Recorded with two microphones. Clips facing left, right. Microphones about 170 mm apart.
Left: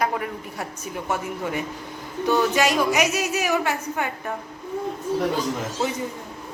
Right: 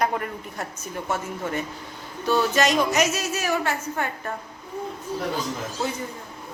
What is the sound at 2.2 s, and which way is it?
A woman's voice, 15° left (ahead or behind).